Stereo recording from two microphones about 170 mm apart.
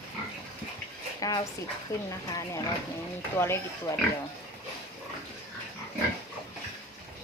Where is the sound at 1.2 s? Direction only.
20° left (ahead or behind).